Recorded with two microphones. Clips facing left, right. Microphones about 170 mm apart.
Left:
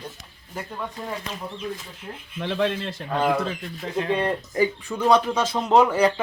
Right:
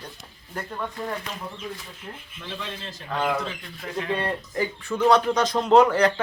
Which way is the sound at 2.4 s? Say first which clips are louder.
Left 13 dB; 65° left (ahead or behind).